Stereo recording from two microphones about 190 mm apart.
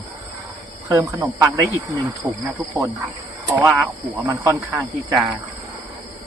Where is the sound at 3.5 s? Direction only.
5° right (ahead or behind).